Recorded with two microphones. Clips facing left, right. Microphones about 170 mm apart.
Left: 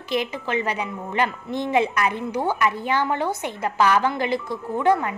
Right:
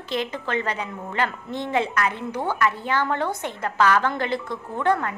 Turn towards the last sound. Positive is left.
turn(degrees=10)  # may be behind; listen again after turning